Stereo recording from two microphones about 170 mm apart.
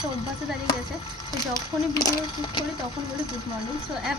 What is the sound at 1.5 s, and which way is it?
Speech, 20° left (ahead or behind).